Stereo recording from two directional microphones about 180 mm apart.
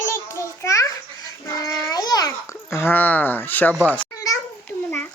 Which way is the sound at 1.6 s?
20° left (ahead or behind).